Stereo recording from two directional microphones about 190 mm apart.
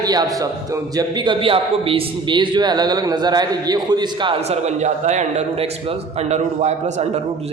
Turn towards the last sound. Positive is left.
turn(degrees=-35)  # may be behind; listen again after turning